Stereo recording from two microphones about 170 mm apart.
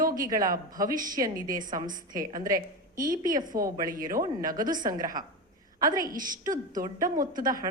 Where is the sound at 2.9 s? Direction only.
55° right (ahead or behind).